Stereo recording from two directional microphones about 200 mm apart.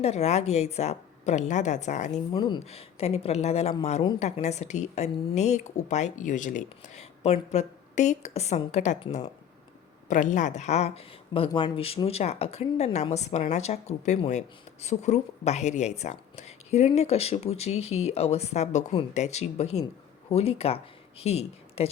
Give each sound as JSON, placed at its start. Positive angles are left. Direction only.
{"t": 0.0, "sound": "speech", "side_deg": 35}
{"t": 2.3, "sound": "speech", "side_deg": 20}
{"t": 10.1, "sound": "speech", "side_deg": 40}